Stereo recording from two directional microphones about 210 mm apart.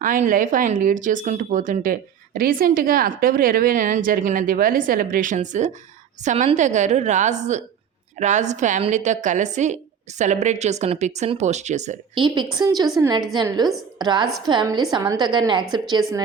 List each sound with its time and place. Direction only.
0.3 s a woman's voice: 40° right (ahead or behind); by 16.2 s 20° right (ahead or behind)